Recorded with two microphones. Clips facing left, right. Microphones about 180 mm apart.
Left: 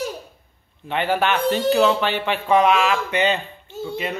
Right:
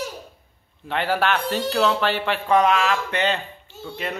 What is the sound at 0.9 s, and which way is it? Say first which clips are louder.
A man's voice: left 1 dB; centre (ahead or behind).